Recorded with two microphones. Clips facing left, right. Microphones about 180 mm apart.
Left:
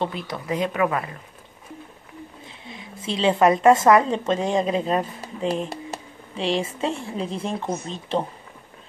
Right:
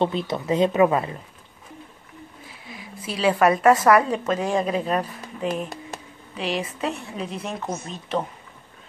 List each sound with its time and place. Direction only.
0.0 s speech: 25° right (ahead or behind)
2.4 s a woman's voice: 25° left (ahead or behind)